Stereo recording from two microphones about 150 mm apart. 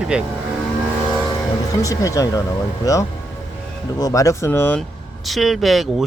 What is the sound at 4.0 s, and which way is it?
Speech, 25° left (ahead or behind).